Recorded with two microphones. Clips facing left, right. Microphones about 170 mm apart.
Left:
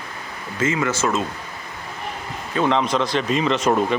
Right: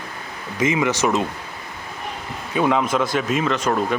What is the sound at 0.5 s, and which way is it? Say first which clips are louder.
Speech: right 2 dB; 15° right (ahead or behind).